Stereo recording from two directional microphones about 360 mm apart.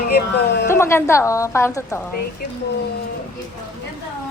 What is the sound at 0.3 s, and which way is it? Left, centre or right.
Speech, left.